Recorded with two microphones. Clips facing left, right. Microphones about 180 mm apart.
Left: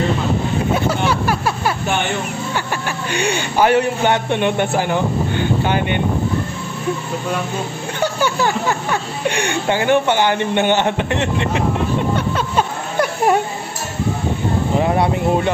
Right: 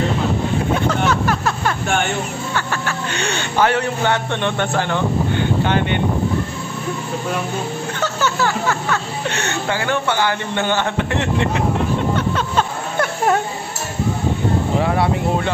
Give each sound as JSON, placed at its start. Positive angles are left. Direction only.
{"t": 0.7, "sound": "vehicle", "side_deg": 10}
{"t": 3.1, "sound": "speech", "side_deg": 10}
{"t": 8.0, "sound": "speech", "side_deg": 15}
{"t": 12.5, "sound": "a sound", "side_deg": 15}